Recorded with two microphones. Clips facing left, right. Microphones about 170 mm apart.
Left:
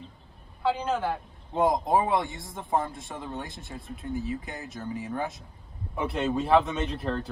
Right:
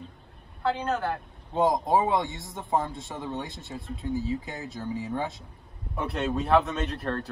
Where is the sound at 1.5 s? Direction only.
25° right (ahead or behind).